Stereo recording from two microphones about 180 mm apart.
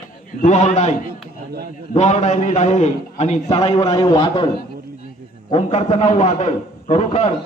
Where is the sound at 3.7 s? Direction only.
20° left (ahead or behind).